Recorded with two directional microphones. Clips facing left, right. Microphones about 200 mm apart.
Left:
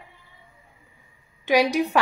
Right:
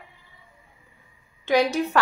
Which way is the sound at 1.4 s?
15° left (ahead or behind).